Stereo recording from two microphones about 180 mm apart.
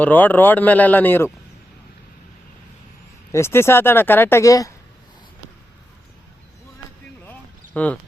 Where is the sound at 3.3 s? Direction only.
15° left (ahead or behind).